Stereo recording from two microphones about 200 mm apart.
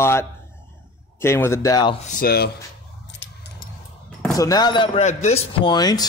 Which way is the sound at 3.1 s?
65° left (ahead or behind).